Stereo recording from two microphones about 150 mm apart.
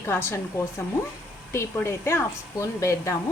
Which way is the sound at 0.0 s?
15° left (ahead or behind).